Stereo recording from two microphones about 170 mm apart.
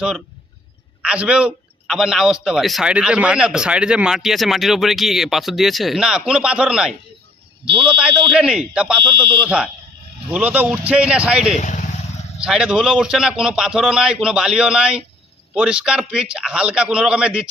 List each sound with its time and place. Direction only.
1.0 s a man's voice: 5° right (ahead or behind)
11.5 s speech: 45° left (ahead or behind)
12.4 s a man's voice: 5° right (ahead or behind)